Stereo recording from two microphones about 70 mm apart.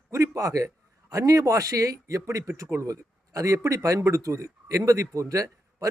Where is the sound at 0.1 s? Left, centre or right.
Right.